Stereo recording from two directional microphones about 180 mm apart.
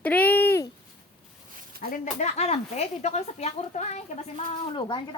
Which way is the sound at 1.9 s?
40° left (ahead or behind).